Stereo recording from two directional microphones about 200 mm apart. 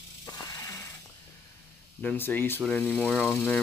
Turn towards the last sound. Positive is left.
turn(degrees=5)  # may be behind; listen again after turning